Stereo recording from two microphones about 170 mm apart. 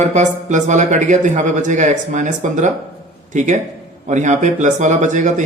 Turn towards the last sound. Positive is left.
turn(degrees=-45)  # may be behind; listen again after turning